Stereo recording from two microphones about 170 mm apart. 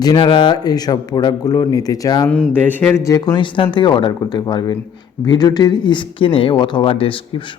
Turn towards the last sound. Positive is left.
turn(degrees=30)  # may be behind; listen again after turning